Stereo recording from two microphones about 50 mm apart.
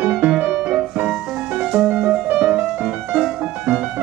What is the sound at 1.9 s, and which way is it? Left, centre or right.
Music, right.